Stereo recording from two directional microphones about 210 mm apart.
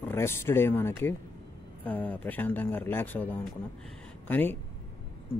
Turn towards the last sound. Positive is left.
turn(degrees=10)  # may be behind; listen again after turning